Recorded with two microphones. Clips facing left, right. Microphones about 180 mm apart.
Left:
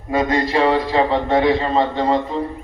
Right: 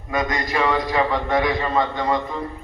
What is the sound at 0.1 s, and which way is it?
A man's voice, 30° left (ahead or behind).